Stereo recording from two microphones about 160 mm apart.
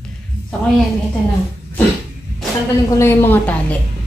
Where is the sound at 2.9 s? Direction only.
15° left (ahead or behind).